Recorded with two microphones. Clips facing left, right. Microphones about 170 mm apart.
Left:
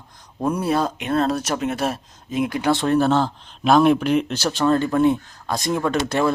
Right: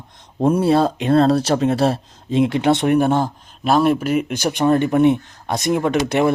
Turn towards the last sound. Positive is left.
turn(degrees=-20)  # may be behind; listen again after turning